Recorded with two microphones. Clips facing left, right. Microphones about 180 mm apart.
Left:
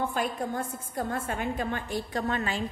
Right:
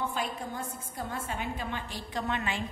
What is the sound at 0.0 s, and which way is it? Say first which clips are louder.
A woman's voice: left 4 dB; 50° left (ahead or behind).